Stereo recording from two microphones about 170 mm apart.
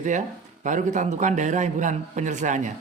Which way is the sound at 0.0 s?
45° right (ahead or behind).